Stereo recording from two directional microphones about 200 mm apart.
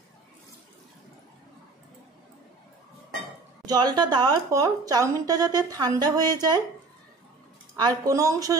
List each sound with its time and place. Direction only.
3.6 s a woman's voice: 20° right (ahead or behind)
7.7 s speech: 20° right (ahead or behind)